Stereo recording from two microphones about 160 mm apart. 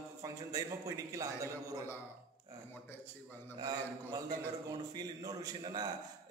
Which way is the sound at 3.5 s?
25° right (ahead or behind).